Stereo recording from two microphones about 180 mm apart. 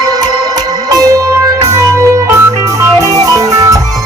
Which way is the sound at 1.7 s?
15° right (ahead or behind).